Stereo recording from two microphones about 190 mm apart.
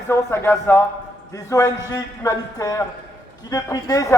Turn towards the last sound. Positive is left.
turn(degrees=20)  # may be behind; listen again after turning